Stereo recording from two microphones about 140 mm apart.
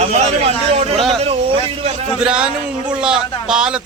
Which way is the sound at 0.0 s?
50° right (ahead or behind).